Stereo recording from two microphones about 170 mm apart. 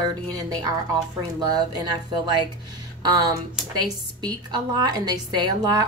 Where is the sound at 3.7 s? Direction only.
25° right (ahead or behind).